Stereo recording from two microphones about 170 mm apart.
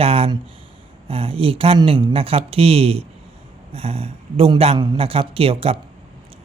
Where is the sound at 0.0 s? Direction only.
35° right (ahead or behind).